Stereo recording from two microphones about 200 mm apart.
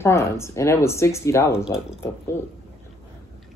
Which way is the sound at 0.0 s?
15° left (ahead or behind).